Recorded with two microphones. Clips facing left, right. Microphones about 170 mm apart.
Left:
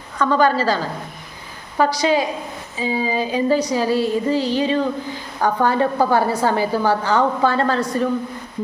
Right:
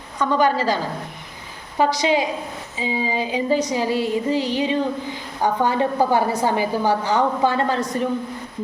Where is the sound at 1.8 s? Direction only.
20° right (ahead or behind).